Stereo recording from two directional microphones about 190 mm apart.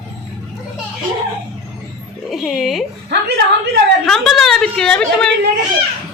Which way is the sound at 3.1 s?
60° right (ahead or behind).